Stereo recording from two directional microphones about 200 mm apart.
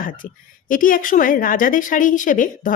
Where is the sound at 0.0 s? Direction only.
45° left (ahead or behind).